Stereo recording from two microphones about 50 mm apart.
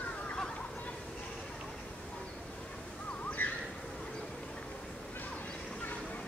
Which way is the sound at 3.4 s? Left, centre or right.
Left.